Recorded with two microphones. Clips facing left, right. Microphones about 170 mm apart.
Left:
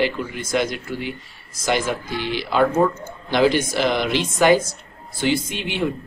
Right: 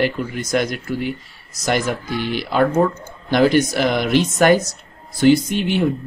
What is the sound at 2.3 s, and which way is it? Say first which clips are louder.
Speech: right 1 dB; 50° right (ahead or behind).